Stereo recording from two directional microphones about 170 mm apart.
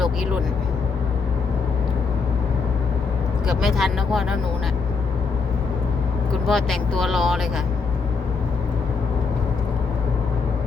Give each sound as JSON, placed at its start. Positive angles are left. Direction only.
{"t": 3.4, "sound": "speech", "side_deg": 0}
{"t": 6.4, "sound": "speech", "side_deg": 0}